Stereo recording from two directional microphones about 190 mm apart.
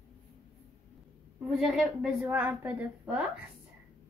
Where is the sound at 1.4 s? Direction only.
Centre (ahead or behind).